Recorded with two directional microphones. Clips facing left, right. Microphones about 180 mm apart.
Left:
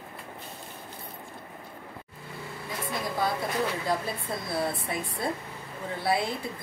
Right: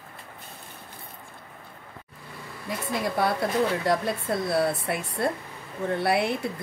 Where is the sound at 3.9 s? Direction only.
75° right (ahead or behind).